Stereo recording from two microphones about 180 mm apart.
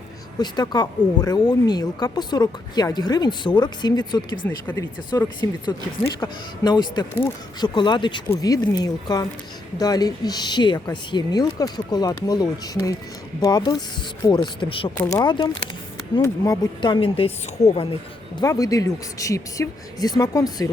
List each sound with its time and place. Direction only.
0.3 s speech: 25° left (ahead or behind)
4.4 s speech: 10° left (ahead or behind); by 14.9 s 25° left (ahead or behind)
14.9 s speech: 15° left (ahead or behind); by 17.8 s 35° left (ahead or behind)
18.3 s speech: 20° left (ahead or behind)